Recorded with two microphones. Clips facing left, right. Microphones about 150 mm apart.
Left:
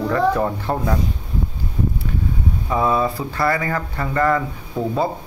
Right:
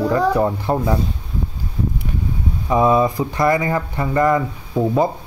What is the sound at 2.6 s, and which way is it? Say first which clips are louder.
Speech: right 4 dB; 20° right (ahead or behind).